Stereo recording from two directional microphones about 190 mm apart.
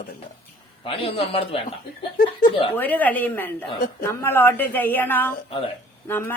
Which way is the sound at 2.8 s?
10° left (ahead or behind).